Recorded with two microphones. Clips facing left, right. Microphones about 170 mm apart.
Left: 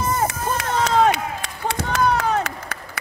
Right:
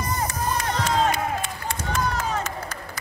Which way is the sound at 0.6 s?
75° left (ahead or behind).